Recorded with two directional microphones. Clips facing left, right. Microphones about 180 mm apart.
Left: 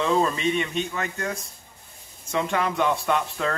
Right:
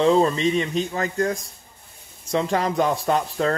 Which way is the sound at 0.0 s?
35° right (ahead or behind).